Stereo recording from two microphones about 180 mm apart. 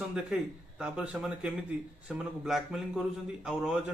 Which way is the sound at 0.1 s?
5° right (ahead or behind).